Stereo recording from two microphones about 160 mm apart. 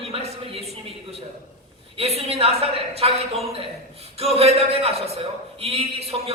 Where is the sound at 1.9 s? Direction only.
40° right (ahead or behind).